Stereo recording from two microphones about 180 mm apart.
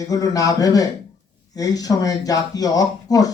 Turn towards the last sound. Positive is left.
turn(degrees=20)  # may be behind; listen again after turning